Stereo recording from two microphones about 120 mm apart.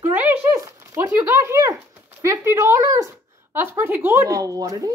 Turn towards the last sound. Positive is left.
turn(degrees=-30)  # may be behind; listen again after turning